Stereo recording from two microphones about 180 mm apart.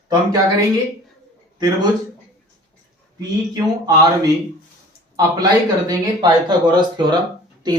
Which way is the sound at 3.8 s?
20° right (ahead or behind).